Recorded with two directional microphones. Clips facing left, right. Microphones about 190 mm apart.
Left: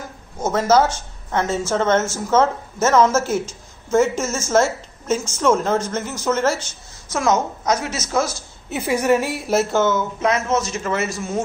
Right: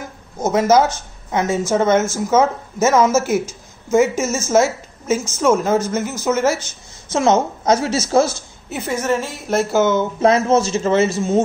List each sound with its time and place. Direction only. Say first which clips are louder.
0.4 s a woman's voice: right 2 dB; 15° right (ahead or behind)
7.1 s speech: right 4 dB; 25° right (ahead or behind)
8.6 s a woman's voice: left 1 dB; centre (ahead or behind)
8.9 s a woman's voice: left 3 dB; 15° left (ahead or behind)
9.8 s speech: right 4 dB; 25° right (ahead or behind)